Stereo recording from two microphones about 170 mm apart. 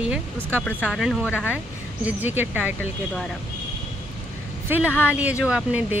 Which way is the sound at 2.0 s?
10° right (ahead or behind).